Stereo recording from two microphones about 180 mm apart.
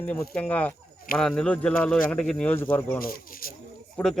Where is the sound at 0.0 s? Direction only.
10° left (ahead or behind).